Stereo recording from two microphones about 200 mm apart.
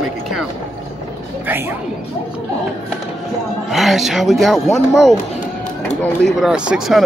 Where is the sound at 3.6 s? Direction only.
Centre (ahead or behind).